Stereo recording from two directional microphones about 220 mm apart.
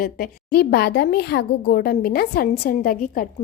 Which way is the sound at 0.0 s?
45° left (ahead or behind).